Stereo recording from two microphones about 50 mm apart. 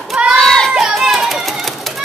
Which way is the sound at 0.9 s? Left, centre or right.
Centre.